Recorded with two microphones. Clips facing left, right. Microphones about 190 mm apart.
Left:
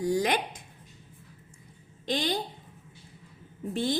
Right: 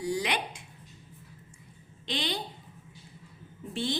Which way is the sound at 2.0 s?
45° left (ahead or behind).